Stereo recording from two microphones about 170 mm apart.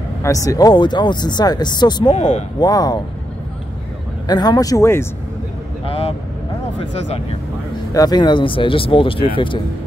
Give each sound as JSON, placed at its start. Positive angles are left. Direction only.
{"t": 0.2, "sound": "speech", "side_deg": 20}
{"t": 2.1, "sound": "speech", "side_deg": 45}
{"t": 2.6, "sound": "speech", "side_deg": 25}
{"t": 4.3, "sound": "speech", "side_deg": 25}
{"t": 5.9, "sound": "speech", "side_deg": 35}
{"t": 7.9, "sound": "speech", "side_deg": 20}